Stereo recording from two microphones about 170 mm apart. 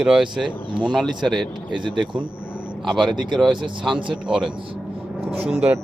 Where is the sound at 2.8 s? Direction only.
Centre (ahead or behind).